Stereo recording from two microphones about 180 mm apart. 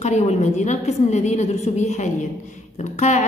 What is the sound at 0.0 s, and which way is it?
A woman's voice, 40° left (ahead or behind).